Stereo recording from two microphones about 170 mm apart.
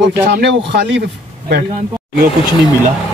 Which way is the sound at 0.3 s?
85° right.